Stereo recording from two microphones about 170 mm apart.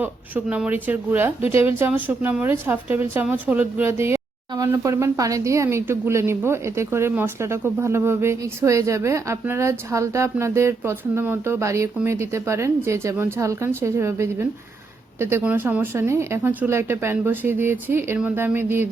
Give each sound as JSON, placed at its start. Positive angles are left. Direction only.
{"t": 0.0, "sound": "speech", "side_deg": -10}